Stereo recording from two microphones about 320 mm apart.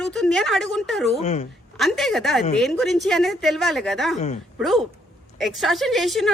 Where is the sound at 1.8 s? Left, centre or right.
Centre.